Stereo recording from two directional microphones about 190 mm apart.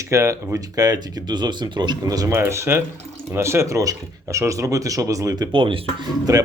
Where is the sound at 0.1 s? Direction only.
15° right (ahead or behind).